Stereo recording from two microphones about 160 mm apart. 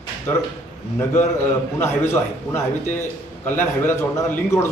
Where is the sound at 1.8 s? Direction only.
15° left (ahead or behind).